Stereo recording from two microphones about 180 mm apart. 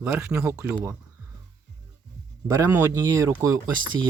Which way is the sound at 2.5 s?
20° right (ahead or behind).